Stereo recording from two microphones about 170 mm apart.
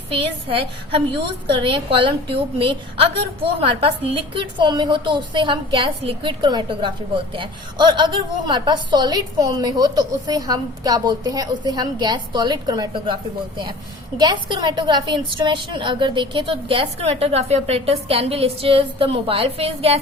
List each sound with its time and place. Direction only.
0.1 s a woman's voice: 35° right (ahead or behind)
14.2 s a woman's voice: 25° right (ahead or behind)